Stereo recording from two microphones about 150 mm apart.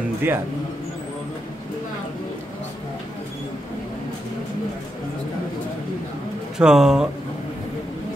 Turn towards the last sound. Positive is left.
turn(degrees=-5)  # may be behind; listen again after turning